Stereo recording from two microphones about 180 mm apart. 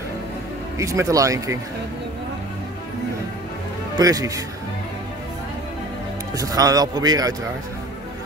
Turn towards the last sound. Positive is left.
turn(degrees=-20)  # may be behind; listen again after turning